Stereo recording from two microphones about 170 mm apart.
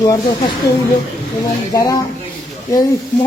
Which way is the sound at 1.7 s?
20° left (ahead or behind).